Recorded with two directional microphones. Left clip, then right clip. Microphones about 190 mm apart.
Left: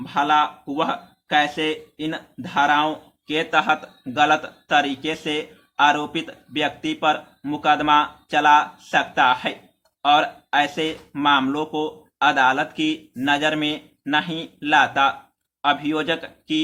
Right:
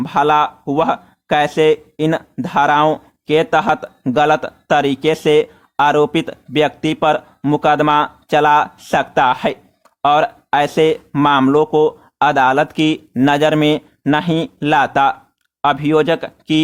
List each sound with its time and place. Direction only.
0.0 s speech: 50° right (ahead or behind)